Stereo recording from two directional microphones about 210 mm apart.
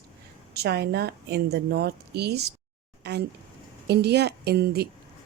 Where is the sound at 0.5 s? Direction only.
50° right (ahead or behind).